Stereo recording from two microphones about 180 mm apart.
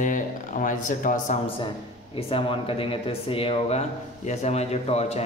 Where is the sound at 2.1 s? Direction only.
30° left (ahead or behind).